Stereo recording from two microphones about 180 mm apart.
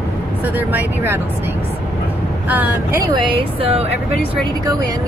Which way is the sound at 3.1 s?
30° right (ahead or behind).